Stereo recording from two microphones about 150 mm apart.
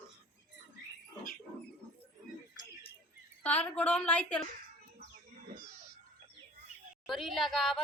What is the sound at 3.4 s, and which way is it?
A woman's voice, 10° left (ahead or behind).